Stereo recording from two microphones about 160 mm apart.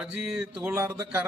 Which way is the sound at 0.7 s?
15° right (ahead or behind).